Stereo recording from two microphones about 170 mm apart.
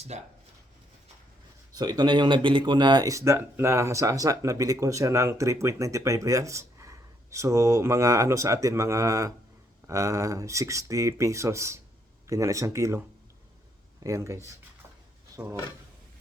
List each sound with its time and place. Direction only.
0.1 s speech: 40° right (ahead or behind)
1.7 s speech: 25° right (ahead or behind)
14.0 s speech: 20° right (ahead or behind)